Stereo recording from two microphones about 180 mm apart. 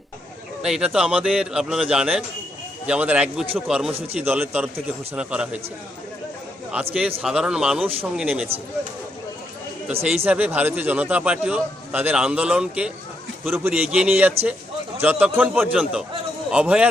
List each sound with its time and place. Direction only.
0.6 s a man's voice: 5° right (ahead or behind)
3.9 s speech: 35° right (ahead or behind)
4.3 s a man's voice: 10° right (ahead or behind)
6.8 s a man's voice: 10° right (ahead or behind)
10.2 s a man's voice: 10° right (ahead or behind)